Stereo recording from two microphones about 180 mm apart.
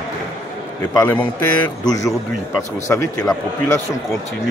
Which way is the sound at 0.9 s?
10° left (ahead or behind).